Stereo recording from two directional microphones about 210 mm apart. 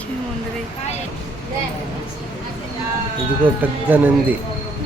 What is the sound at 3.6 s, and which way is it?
Speech, 10° right (ahead or behind).